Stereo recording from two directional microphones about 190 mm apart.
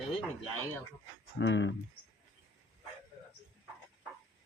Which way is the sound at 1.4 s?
70° left (ahead or behind).